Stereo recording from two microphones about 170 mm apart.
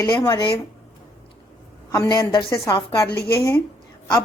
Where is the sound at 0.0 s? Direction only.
25° left (ahead or behind).